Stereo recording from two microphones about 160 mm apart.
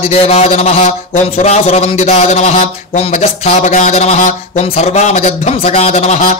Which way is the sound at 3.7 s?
50° left (ahead or behind).